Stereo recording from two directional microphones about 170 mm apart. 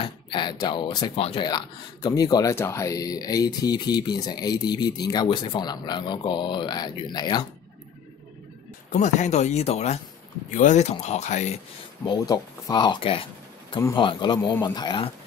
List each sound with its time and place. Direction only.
0.0 s speech: 25° left (ahead or behind)
8.9 s speech: 45° left (ahead or behind)
12.0 s speech: 25° left (ahead or behind)